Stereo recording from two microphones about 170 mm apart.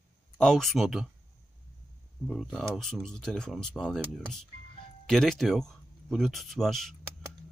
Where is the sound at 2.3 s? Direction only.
Centre (ahead or behind).